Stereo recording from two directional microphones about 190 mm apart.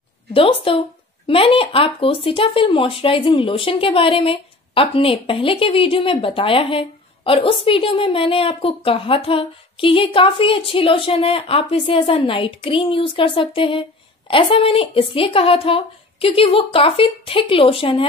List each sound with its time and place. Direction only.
0.3 s speech: 30° left (ahead or behind)